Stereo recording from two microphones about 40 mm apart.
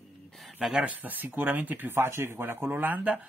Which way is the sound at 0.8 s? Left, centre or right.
Right.